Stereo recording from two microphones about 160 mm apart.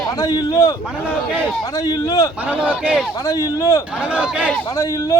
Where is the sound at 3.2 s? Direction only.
20° left (ahead or behind).